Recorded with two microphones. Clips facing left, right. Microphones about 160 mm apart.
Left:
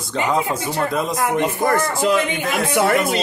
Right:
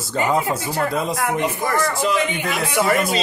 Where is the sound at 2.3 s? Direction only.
65° left (ahead or behind).